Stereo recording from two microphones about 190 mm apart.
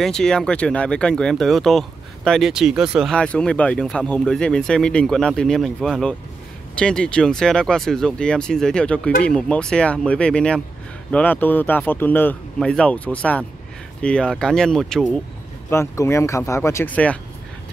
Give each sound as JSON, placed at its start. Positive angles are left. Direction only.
{"t": 0.0, "sound": "speech", "side_deg": 5}
{"t": 15.7, "sound": "speech", "side_deg": 15}